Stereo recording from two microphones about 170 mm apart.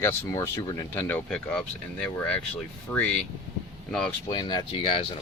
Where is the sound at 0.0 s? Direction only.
15° left (ahead or behind).